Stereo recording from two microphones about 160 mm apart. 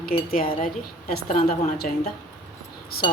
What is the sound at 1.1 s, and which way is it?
Speech, 65° left (ahead or behind).